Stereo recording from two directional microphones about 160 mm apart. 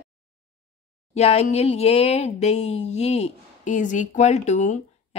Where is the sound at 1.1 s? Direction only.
40° left (ahead or behind).